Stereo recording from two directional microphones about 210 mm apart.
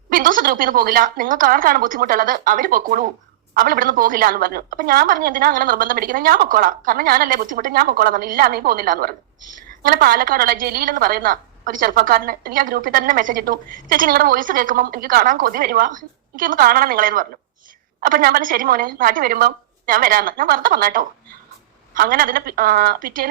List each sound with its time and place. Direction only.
0.1 s a woman's voice: 40° right (ahead or behind)